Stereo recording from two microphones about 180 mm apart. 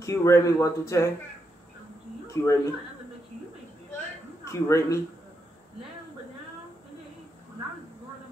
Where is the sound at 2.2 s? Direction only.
15° left (ahead or behind).